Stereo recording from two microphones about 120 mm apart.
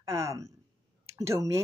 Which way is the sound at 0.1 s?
25° right (ahead or behind).